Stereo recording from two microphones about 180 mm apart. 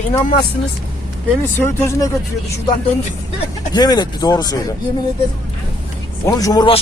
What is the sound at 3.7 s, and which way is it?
Speech, 20° left (ahead or behind).